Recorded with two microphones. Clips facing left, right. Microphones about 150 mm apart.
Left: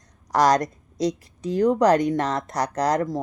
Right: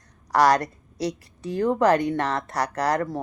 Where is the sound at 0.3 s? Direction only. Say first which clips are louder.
Even; 20° left (ahead or behind).